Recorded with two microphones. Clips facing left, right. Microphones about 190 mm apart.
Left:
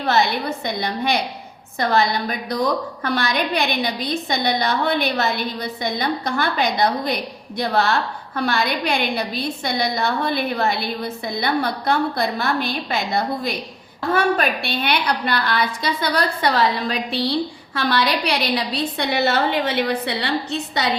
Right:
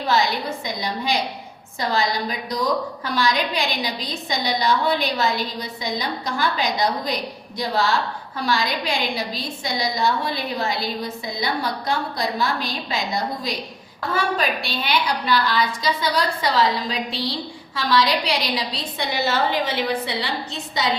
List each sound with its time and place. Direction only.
0.6 s a woman's voice: 60° left (ahead or behind)
14.1 s a woman's voice: 60° left (ahead or behind)